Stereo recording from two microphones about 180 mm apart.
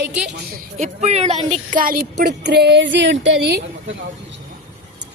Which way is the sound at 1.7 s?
50° right (ahead or behind).